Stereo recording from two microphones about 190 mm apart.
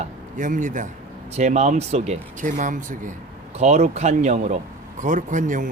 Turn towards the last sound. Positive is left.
turn(degrees=-40)  # may be behind; listen again after turning